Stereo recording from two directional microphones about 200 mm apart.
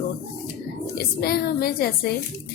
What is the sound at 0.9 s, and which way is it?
A woman's voice, 50° left (ahead or behind).